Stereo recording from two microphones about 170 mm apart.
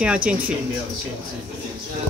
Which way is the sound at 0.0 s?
5° right (ahead or behind).